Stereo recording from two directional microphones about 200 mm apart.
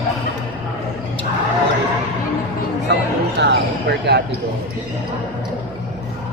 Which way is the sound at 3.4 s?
60° right (ahead or behind).